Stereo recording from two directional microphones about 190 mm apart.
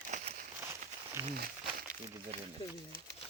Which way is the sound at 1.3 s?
50° right (ahead or behind).